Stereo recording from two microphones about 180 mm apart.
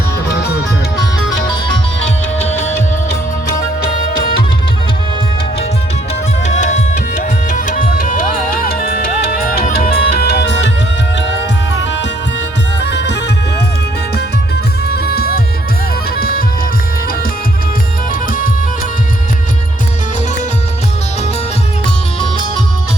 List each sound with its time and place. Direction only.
6.4 s music: 40° left (ahead or behind); by 10.7 s 70° left (ahead or behind)
12.8 s music: 70° left (ahead or behind); by 16.4 s 55° left (ahead or behind)
18.1 s music: 50° left (ahead or behind)